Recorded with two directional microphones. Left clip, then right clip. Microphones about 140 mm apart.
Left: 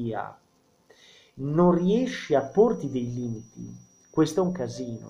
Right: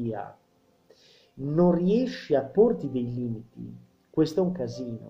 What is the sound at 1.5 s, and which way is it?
Speech, centre (ahead or behind).